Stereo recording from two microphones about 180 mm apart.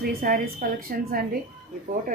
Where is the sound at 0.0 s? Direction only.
55° right (ahead or behind).